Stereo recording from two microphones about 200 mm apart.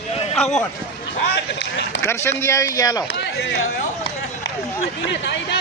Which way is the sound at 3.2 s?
60° left (ahead or behind).